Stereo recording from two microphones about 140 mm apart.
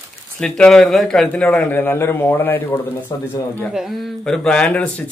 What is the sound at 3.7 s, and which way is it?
A woman's voice, centre (ahead or behind).